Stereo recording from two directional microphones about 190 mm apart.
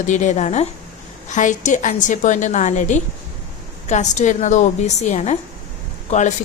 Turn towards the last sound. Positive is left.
turn(degrees=40)  # may be behind; listen again after turning